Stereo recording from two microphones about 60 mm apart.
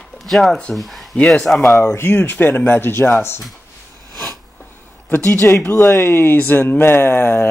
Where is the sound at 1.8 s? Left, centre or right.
Left.